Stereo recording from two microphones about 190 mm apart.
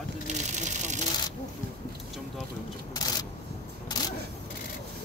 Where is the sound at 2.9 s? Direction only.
20° left (ahead or behind).